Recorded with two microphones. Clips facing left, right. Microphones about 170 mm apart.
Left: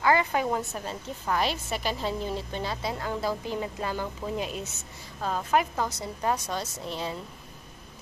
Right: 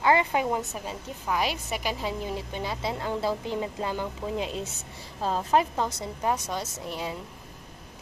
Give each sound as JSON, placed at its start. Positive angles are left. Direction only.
{"t": 0.0, "sound": "a woman's voice", "side_deg": -20}
{"t": 6.2, "sound": "speech", "side_deg": -15}